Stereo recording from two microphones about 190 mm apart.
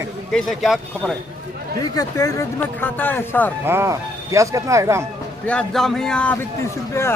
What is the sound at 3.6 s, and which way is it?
Speech, 15° right (ahead or behind).